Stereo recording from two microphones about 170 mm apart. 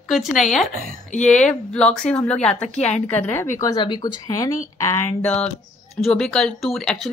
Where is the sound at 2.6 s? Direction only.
45° left (ahead or behind).